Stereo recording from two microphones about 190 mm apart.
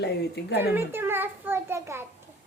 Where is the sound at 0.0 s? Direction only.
60° left (ahead or behind).